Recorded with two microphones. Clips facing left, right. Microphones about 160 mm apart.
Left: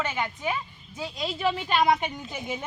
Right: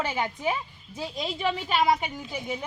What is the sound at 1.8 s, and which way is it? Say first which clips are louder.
Speech: even; centre (ahead or behind).